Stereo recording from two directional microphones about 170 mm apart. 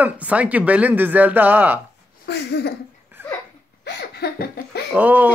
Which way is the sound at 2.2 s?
75° left (ahead or behind).